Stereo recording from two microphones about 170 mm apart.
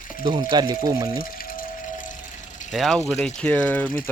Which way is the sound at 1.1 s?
60° left (ahead or behind).